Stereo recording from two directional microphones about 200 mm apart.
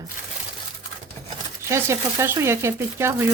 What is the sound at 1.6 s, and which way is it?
Speech, 15° right (ahead or behind).